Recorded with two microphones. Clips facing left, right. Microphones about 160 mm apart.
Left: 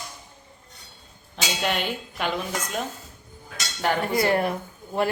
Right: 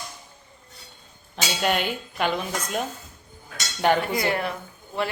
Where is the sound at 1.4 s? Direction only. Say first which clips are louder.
Right 2 dB; 5° right (ahead or behind).